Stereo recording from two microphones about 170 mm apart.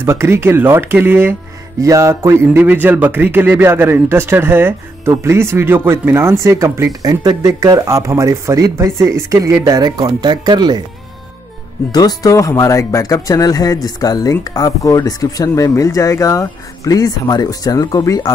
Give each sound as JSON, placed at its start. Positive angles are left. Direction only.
{"t": 0.0, "sound": "speech", "side_deg": -15}
{"t": 11.9, "sound": "speech", "side_deg": 20}